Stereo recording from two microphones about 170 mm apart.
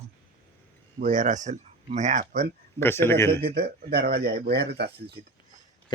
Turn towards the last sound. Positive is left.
turn(degrees=-75)  # may be behind; listen again after turning